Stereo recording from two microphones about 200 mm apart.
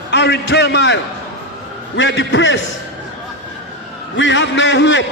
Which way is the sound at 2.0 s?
65° left (ahead or behind).